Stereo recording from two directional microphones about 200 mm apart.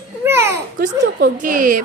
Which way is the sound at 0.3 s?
15° right (ahead or behind).